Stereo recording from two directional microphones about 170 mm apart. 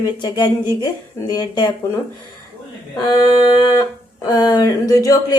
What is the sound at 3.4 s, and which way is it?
Speech, 25° left (ahead or behind).